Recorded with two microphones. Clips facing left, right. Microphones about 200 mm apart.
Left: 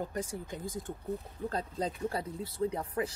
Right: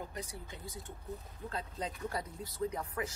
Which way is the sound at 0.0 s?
45° left (ahead or behind).